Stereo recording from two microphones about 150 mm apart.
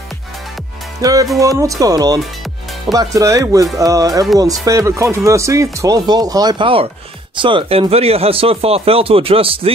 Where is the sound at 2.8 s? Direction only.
25° right (ahead or behind).